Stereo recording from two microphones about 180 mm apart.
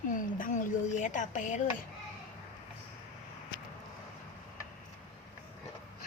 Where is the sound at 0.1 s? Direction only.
50° left (ahead or behind).